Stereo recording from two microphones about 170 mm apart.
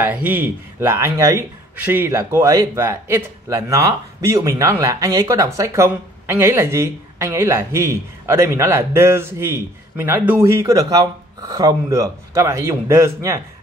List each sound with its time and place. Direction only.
0.0 s speech: 10° right (ahead or behind)